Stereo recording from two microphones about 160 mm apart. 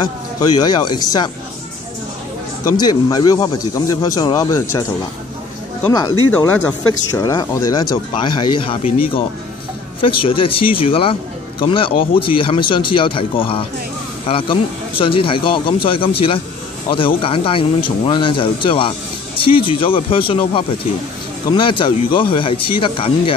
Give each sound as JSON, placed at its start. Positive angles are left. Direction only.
{"t": 0.6, "sound": "speech", "side_deg": 25}
{"t": 2.8, "sound": "speech", "side_deg": 25}
{"t": 6.3, "sound": "speech", "side_deg": 10}
{"t": 6.9, "sound": "speech", "side_deg": 20}
{"t": 10.0, "sound": "speech", "side_deg": 35}